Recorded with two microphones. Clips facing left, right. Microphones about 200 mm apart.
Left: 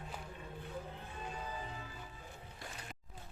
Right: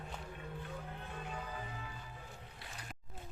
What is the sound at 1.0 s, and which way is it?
Music, 60° right (ahead or behind).